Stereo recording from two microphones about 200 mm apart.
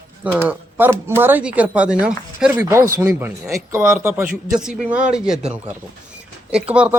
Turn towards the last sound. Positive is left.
turn(degrees=-5)  # may be behind; listen again after turning